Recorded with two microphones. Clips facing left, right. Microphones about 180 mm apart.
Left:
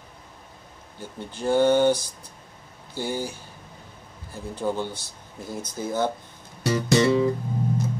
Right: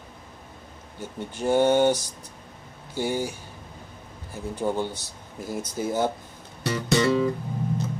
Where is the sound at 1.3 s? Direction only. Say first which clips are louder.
Left 1 dB; 15° right (ahead or behind).